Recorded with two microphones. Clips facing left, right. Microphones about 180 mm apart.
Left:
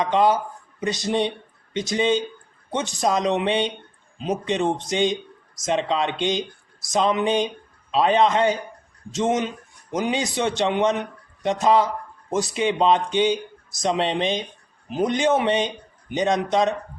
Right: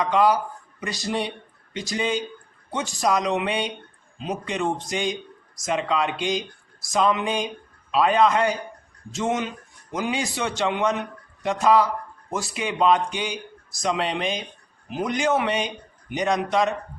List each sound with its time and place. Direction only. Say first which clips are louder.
0.0 s speech: left 1 dB; 25° left (ahead or behind)